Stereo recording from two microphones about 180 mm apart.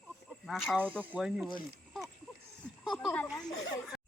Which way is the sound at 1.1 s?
5° right (ahead or behind).